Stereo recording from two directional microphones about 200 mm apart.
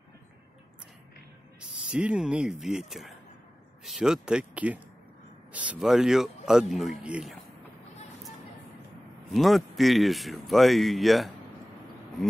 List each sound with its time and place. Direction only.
1.9 s speech: 5° right (ahead or behind)
9.3 s speech: centre (ahead or behind)